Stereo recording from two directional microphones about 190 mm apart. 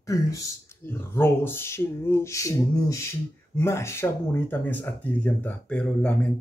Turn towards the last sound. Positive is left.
turn(degrees=5)  # may be behind; listen again after turning